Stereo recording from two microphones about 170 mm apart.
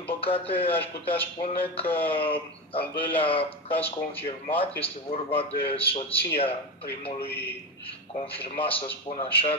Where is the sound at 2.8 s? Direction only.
10° left (ahead or behind).